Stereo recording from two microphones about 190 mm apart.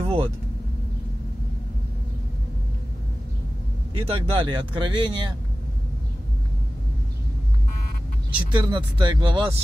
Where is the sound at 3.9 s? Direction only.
30° right (ahead or behind).